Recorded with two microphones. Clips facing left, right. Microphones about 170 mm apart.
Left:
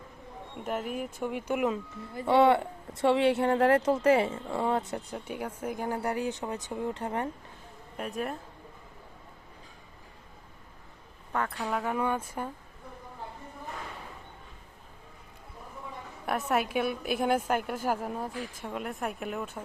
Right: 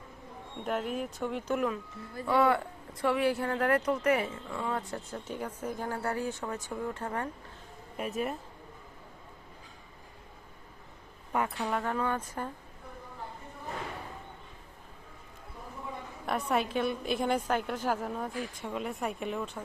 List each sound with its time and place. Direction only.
0.6 s speech: 5° left (ahead or behind); by 4.8 s 30° left (ahead or behind)
4.8 s a woman's voice: 20° left (ahead or behind)
7.9 s speech: centre (ahead or behind)
11.3 s speech: 15° right (ahead or behind)
11.7 s a woman's voice: 5° left (ahead or behind)
16.2 s a woman's voice: centre (ahead or behind)